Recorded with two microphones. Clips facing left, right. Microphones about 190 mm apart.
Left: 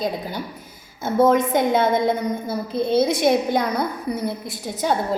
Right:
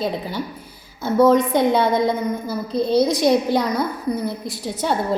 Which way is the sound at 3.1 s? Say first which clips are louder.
Right 1 dB; 55° left (ahead or behind).